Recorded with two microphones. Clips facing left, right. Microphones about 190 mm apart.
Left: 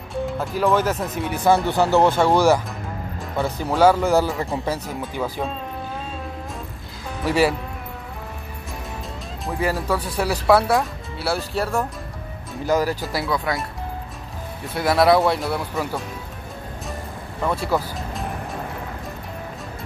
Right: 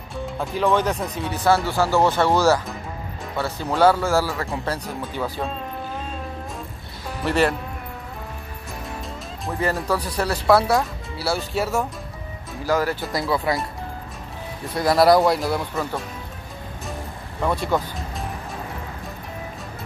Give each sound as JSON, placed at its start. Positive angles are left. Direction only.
{"t": 0.1, "sound": "speech", "side_deg": 0}
{"t": 4.6, "sound": "speech", "side_deg": 10}
{"t": 7.2, "sound": "speech", "side_deg": 5}
{"t": 9.5, "sound": "speech", "side_deg": 5}
{"t": 12.6, "sound": "speech", "side_deg": 20}
{"t": 13.1, "sound": "speech", "side_deg": 0}
{"t": 14.8, "sound": "speech", "side_deg": 0}
{"t": 17.4, "sound": "speech", "side_deg": 0}